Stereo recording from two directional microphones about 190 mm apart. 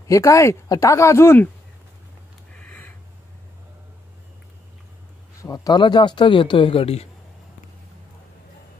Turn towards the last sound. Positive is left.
turn(degrees=30)  # may be behind; listen again after turning